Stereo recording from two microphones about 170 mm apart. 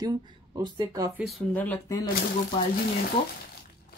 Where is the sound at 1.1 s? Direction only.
Centre (ahead or behind).